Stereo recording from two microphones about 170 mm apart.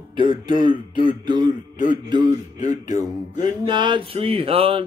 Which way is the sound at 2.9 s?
25° right (ahead or behind).